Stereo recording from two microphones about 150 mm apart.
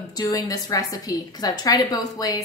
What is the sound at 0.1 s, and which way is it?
A woman's voice, 20° left (ahead or behind).